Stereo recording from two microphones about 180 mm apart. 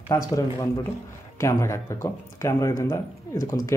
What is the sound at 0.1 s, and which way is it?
A man's voice, 20° left (ahead or behind).